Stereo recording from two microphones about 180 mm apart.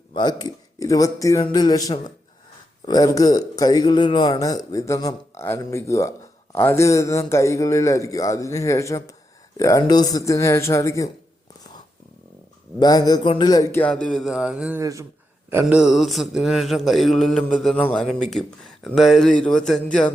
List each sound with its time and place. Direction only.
0.1 s a man's voice: 25° left (ahead or behind)
12.8 s a man's voice: 20° left (ahead or behind); by 14.8 s 5° right (ahead or behind)
14.8 s a man's voice: 15° right (ahead or behind)
15.4 s mantra: 10° right (ahead or behind); by 20.1 s 5° left (ahead or behind)